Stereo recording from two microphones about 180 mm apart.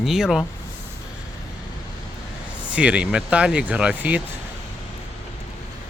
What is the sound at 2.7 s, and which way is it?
Speech, 5° right (ahead or behind).